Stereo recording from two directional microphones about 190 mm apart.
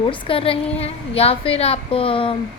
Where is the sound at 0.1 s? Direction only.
30° left (ahead or behind).